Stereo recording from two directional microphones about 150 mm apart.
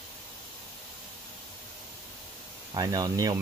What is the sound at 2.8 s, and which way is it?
Speech, 25° right (ahead or behind).